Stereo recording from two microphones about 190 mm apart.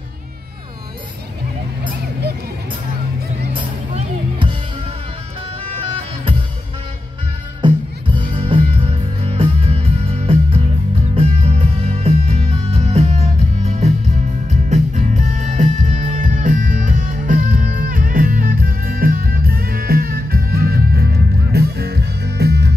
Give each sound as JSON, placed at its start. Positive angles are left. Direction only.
{"t": 3.5, "sound": "music", "side_deg": -25}
{"t": 7.6, "sound": "music", "side_deg": -25}